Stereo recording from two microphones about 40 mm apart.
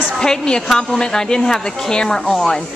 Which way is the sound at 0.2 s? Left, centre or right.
Centre.